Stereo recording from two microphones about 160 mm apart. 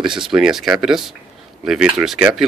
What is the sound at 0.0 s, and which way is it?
Speech, 30° right (ahead or behind).